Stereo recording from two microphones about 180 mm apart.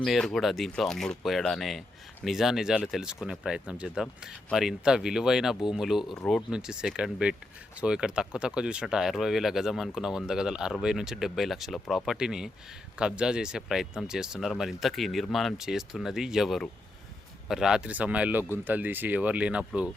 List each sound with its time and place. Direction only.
0.0 s speech: centre (ahead or behind)